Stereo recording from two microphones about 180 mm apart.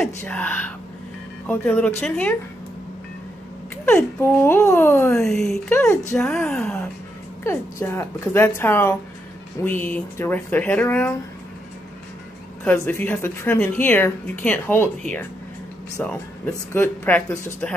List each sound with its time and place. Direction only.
0.2 s speech: 10° left (ahead or behind)
3.8 s speech: 15° left (ahead or behind)
5.7 s speech: 10° left (ahead or behind)
12.6 s speech: 10° left (ahead or behind)